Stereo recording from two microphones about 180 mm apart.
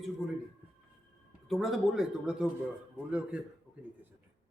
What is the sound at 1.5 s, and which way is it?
A woman's voice, centre (ahead or behind).